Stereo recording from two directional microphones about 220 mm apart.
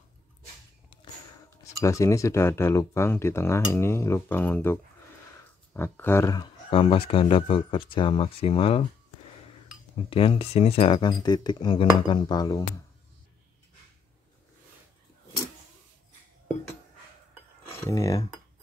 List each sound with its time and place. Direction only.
1.6 s speech: 15° left (ahead or behind)
10.0 s speech: 25° left (ahead or behind)
17.7 s speech: 15° left (ahead or behind)